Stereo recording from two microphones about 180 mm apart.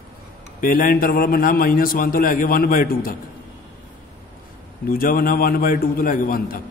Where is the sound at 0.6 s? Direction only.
50° left (ahead or behind).